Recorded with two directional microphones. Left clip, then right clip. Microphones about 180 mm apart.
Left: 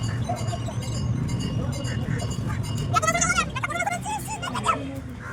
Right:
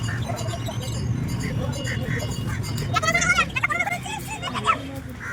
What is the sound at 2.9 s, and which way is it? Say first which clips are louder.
Bleat: right 2 dB; 35° left (ahead or behind).